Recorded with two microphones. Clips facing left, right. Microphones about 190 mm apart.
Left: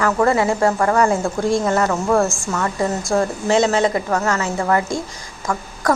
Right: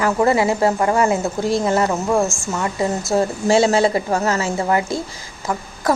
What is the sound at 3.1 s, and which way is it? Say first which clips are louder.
A woman's voice: right 1 dB; 20° right (ahead or behind).